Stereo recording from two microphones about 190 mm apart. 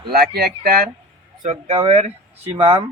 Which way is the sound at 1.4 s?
35° right (ahead or behind).